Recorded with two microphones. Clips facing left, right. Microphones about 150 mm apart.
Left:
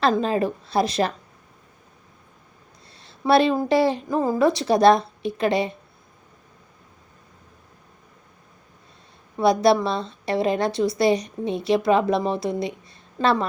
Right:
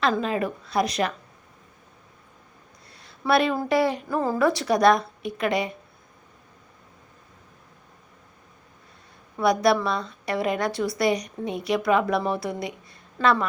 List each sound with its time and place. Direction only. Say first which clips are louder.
0.0 s speech: left 3 dB; 35° left (ahead or behind)
3.0 s a sound: left 4 dB; 30° left (ahead or behind)
3.7 s a woman's voice: left 3 dB; 25° left (ahead or behind)
9.4 s a woman's voice: left 3 dB; 25° left (ahead or behind)